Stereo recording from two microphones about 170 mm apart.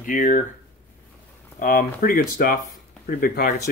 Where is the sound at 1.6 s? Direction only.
55° left (ahead or behind).